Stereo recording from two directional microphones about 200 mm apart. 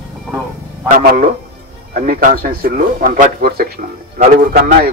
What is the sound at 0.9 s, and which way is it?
Speech, 45° right (ahead or behind).